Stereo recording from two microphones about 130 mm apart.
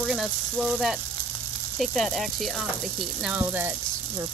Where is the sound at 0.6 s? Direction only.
5° right (ahead or behind).